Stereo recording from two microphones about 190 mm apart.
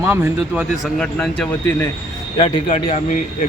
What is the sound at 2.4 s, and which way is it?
Speech, 35° left (ahead or behind).